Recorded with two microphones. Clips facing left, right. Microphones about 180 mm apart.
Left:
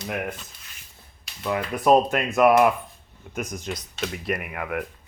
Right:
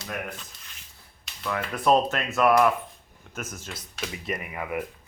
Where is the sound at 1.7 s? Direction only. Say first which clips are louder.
Left 3 dB; 10° left (ahead or behind).